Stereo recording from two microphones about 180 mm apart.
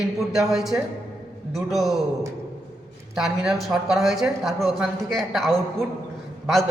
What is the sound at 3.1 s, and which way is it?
Speech, centre (ahead or behind).